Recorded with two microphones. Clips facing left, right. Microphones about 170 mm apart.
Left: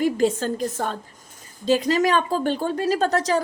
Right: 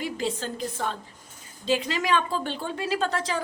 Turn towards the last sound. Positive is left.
turn(degrees=40)  # may be behind; listen again after turning